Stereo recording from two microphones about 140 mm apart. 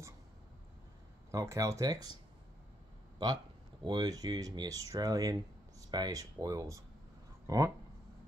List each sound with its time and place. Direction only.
1.3 s speech: 20° right (ahead or behind)
3.8 s speech: 30° right (ahead or behind)